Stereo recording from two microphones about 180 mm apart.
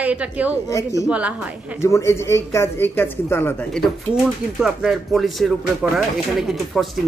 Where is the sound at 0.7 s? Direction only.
15° left (ahead or behind).